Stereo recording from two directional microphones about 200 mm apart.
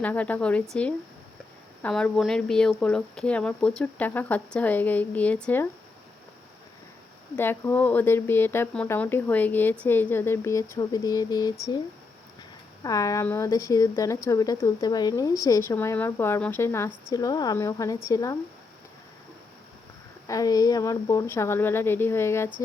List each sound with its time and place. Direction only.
0.0 s speech: 10° left (ahead or behind)
7.3 s speech: 10° left (ahead or behind)
12.8 s speech: 15° left (ahead or behind)
20.2 s speech: 15° left (ahead or behind)